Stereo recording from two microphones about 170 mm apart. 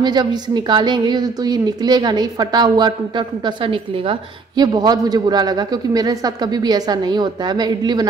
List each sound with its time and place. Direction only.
0.0 s a woman's voice: 25° right (ahead or behind)